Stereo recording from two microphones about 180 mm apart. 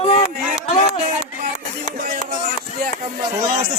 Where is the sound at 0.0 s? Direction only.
35° left (ahead or behind).